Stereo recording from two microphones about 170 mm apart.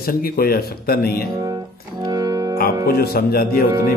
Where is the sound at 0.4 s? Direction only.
60° left (ahead or behind).